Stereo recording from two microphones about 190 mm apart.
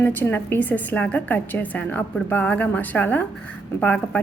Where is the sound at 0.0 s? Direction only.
10° left (ahead or behind).